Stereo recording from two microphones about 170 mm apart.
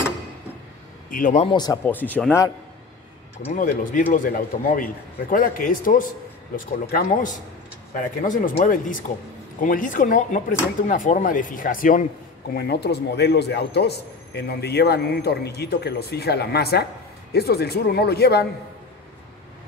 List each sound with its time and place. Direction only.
1.1 s speech: 45° left (ahead or behind)
1.5 s speech: 25° left (ahead or behind)
1.9 s speech: 10° left (ahead or behind)
3.5 s a man's voice: 50° left (ahead or behind); by 18.4 s 70° left (ahead or behind)